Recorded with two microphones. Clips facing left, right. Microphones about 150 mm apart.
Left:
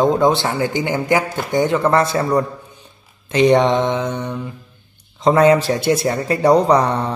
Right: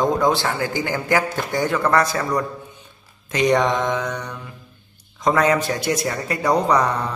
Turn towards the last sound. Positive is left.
turn(degrees=30)  # may be behind; listen again after turning